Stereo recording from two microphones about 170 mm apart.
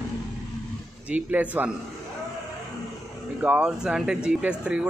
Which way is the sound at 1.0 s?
10° right (ahead or behind).